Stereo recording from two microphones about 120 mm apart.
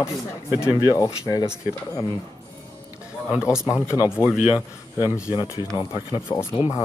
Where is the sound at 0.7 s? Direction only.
35° left (ahead or behind).